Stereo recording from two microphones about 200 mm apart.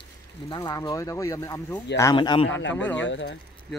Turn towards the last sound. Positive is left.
turn(degrees=65)  # may be behind; listen again after turning